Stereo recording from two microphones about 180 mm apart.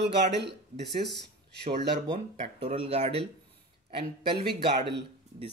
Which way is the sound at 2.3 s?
30° right (ahead or behind).